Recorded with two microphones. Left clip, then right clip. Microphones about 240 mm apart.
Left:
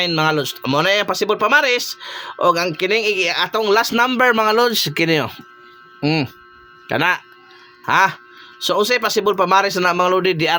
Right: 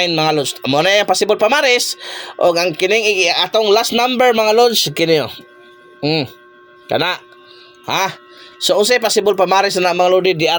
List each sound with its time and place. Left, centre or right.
0.0 s speech: centre
6.0 s speech: left
6.8 s speech: left